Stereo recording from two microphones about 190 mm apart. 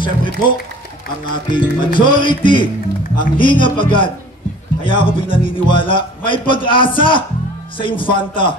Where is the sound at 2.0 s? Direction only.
25° left (ahead or behind).